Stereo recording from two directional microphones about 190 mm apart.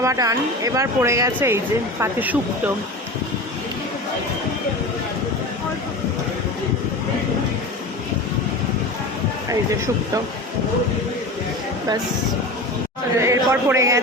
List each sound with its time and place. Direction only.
0.0 s speech: 15° right (ahead or behind)
13.1 s speech: 15° right (ahead or behind)